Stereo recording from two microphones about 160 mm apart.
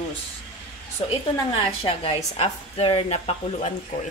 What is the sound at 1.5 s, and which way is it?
A woman's voice, 35° left (ahead or behind).